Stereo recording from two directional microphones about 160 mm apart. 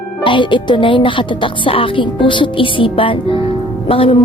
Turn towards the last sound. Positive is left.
turn(degrees=35)  # may be behind; listen again after turning